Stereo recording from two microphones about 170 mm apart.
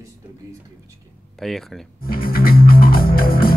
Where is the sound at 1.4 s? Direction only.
Centre (ahead or behind).